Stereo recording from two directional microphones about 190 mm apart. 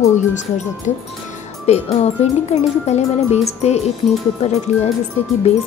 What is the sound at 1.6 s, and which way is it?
Speech, 35° left (ahead or behind).